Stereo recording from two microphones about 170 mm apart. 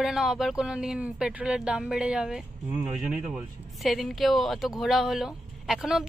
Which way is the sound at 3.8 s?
Centre (ahead or behind).